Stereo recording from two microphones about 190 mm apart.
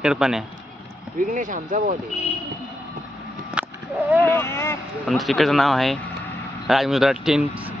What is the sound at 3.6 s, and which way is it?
Cat, 5° right (ahead or behind).